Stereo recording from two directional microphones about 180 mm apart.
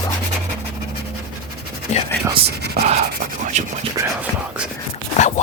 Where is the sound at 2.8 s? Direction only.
35° right (ahead or behind).